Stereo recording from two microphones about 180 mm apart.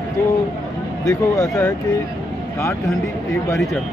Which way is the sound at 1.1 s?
20° left (ahead or behind).